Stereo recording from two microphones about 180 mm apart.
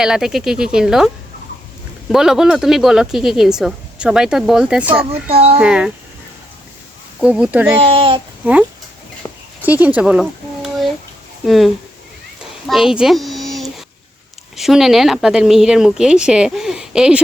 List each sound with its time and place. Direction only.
0.0 s speech: 5° right (ahead or behind)
2.1 s speech: 5° right (ahead or behind)
5.3 s speech: 35° right (ahead or behind)
5.5 s speech: 5° right (ahead or behind)
7.2 s speech: 5° right (ahead or behind)
7.9 s speech: 30° right (ahead or behind)
8.4 s speech: 10° right (ahead or behind)
9.2 s a sound: 15° left (ahead or behind)
9.6 s a sound: 10° right (ahead or behind)
11.4 s speech: centre (ahead or behind)
12.4 s a sound: centre (ahead or behind)
14.5 s speech: centre (ahead or behind)